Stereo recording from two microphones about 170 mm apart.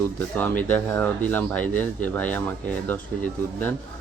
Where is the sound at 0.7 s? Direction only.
10° left (ahead or behind).